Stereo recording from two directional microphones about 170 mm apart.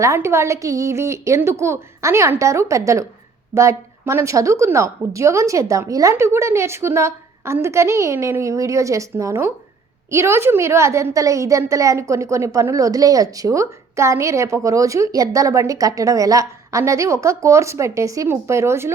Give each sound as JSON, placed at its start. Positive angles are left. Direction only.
{"t": 0.0, "sound": "a woman's voice", "side_deg": -15}